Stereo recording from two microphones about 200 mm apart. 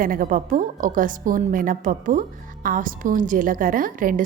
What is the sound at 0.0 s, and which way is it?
A woman's voice, 45° right (ahead or behind).